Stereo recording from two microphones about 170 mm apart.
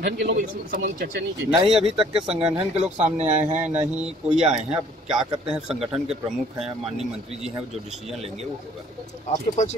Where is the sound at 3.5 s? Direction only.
10° right (ahead or behind).